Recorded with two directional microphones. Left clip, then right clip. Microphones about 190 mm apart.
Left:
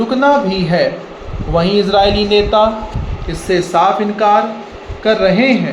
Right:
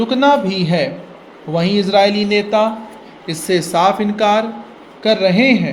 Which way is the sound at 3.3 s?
45° right (ahead or behind).